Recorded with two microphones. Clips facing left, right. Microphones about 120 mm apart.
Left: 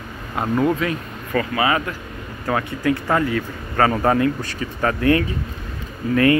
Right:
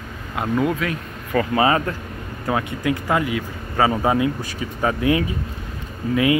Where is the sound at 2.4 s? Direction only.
20° right (ahead or behind).